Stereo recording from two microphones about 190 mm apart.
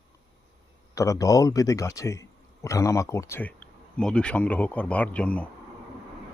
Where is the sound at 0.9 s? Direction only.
15° left (ahead or behind).